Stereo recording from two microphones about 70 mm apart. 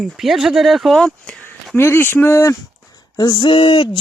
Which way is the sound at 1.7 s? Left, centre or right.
Left.